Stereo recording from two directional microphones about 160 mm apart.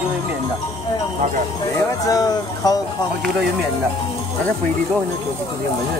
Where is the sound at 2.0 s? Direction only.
25° left (ahead or behind).